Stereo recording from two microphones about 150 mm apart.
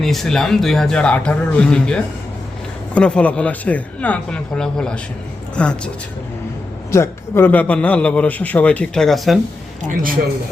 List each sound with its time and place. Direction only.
0.0 s a man's voice: centre (ahead or behind)
6.9 s a man's voice: 15° left (ahead or behind); by 9.4 s centre (ahead or behind)
9.8 s a man's voice: 65° right (ahead or behind)